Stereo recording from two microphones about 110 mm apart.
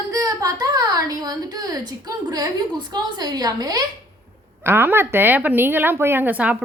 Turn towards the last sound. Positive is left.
turn(degrees=-10)  # may be behind; listen again after turning